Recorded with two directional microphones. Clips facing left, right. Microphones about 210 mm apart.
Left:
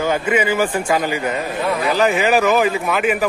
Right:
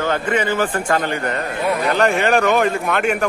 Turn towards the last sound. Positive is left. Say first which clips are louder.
# left 1 dB
turn(degrees=0)  # may be behind; listen again after turning